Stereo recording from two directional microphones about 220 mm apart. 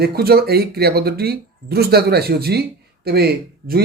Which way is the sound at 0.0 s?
45° right (ahead or behind).